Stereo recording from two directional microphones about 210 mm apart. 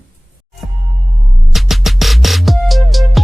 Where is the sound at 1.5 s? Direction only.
Centre (ahead or behind).